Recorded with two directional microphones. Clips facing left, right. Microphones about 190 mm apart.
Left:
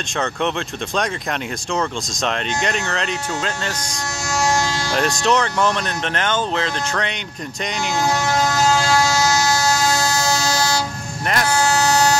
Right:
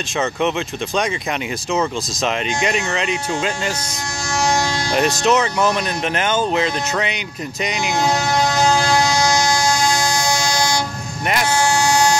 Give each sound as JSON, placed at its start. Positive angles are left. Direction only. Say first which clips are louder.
{"t": 1.7, "sound": "speech", "louder": "right 3 dB", "side_deg": -5}
{"t": 4.9, "sound": "speech", "louder": "right 2 dB", "side_deg": -5}
{"t": 8.0, "sound": "a sound", "louder": "right 1 dB", "side_deg": -20}
{"t": 10.5, "sound": "train", "louder": "even", "side_deg": -15}
{"t": 11.7, "sound": "vehicle", "louder": "even", "side_deg": -15}